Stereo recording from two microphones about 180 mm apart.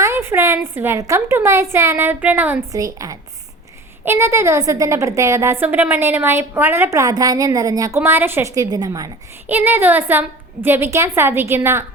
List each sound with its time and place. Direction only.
0.0 s a woman's voice: 15° right (ahead or behind)